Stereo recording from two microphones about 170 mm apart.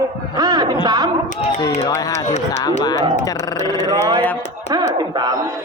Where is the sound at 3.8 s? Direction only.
25° right (ahead or behind).